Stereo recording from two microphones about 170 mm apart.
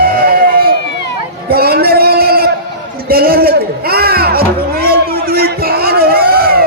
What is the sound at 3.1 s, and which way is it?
Music, 60° right (ahead or behind).